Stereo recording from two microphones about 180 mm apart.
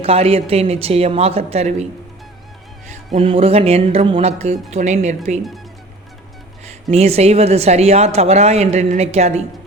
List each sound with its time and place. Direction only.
0.0 s a woman's voice: 35° right (ahead or behind)
2.9 s a woman's voice: 35° right (ahead or behind)
6.9 s a woman's voice: 35° right (ahead or behind)